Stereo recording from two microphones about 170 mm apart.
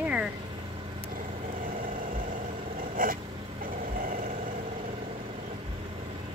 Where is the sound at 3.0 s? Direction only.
55° right (ahead or behind).